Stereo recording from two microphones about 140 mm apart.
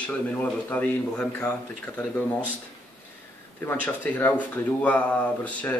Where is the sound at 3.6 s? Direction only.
10° left (ahead or behind).